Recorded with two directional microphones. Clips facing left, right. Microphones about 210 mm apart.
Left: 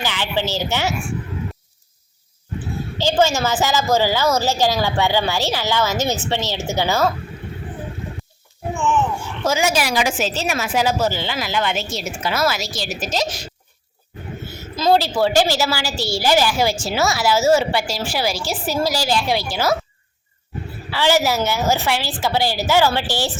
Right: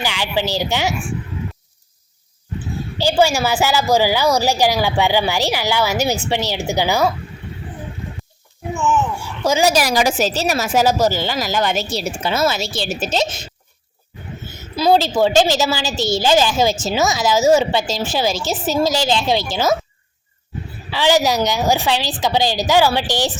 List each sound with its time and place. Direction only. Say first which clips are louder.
0.0 s a woman's voice: right 2 dB; 15° right (ahead or behind)
3.0 s a woman's voice: right 2 dB; 10° right (ahead or behind)
9.6 s speech: right 5 dB; 40° right (ahead or behind); by 13.5 s 25° right (ahead or behind)
14.8 s a woman's voice: right 2 dB; 15° right (ahead or behind)
20.9 s a woman's voice: right 2 dB; 15° right (ahead or behind)